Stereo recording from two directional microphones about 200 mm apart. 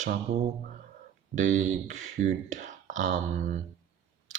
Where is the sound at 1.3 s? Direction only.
35° right (ahead or behind).